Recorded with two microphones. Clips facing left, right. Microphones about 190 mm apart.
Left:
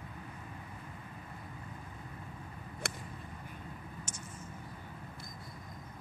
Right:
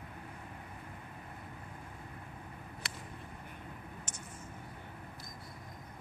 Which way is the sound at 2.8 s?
50° left (ahead or behind).